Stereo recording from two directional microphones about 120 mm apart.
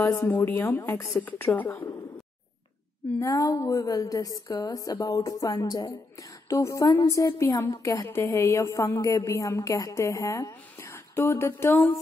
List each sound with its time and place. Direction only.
0.0 s a woman's voice: 25° left (ahead or behind)
3.2 s a woman's voice: 30° left (ahead or behind)